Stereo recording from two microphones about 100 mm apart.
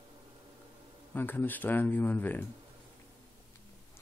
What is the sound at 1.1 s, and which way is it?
Speech, 20° left (ahead or behind).